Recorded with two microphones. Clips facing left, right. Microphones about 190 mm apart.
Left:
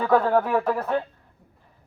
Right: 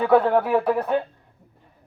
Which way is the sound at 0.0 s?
10° right (ahead or behind).